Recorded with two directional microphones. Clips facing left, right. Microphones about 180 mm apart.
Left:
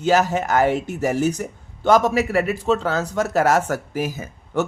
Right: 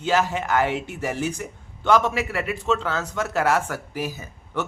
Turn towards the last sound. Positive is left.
turn(degrees=45)  # may be behind; listen again after turning